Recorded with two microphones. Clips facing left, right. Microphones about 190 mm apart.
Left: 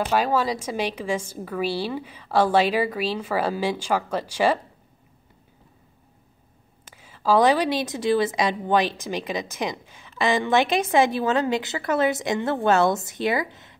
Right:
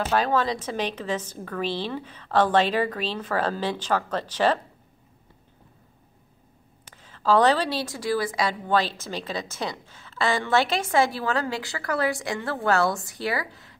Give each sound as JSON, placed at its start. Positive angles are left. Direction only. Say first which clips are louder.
{"t": 0.0, "sound": "a woman's voice", "louder": "left 1 dB", "side_deg": 10}
{"t": 6.9, "sound": "a woman's voice", "louder": "left 1 dB", "side_deg": 10}